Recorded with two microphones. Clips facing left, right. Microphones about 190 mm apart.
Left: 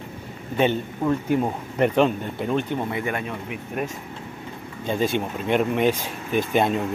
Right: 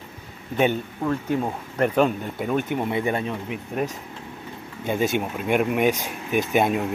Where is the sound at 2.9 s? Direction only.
20° right (ahead or behind).